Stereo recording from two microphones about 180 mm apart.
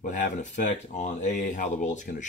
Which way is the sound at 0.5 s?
40° left (ahead or behind).